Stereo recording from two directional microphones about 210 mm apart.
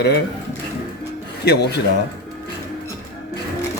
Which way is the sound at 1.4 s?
50° left (ahead or behind).